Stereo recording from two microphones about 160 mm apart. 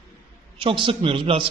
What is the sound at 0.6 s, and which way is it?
Speech, 35° right (ahead or behind).